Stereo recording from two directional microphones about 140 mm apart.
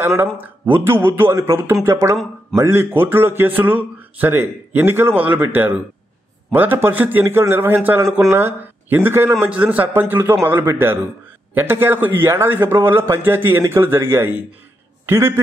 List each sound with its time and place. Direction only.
0.0 s a man's voice: 15° right (ahead or behind)